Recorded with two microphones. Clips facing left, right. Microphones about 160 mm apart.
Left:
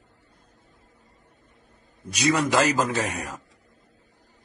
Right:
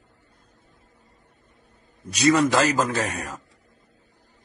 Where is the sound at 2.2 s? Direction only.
10° left (ahead or behind).